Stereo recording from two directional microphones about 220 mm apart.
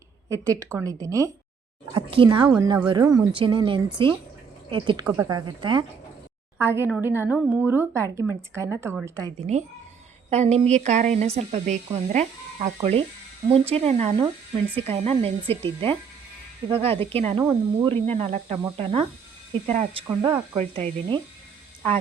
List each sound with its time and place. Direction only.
0.3 s speech: 15° right (ahead or behind)
6.6 s speech: 10° right (ahead or behind)
10.2 s speech: 30° right (ahead or behind)
18.0 s speech: 30° right (ahead or behind)
20.1 s speech: 15° right (ahead or behind)
20.6 s speech: 30° right (ahead or behind)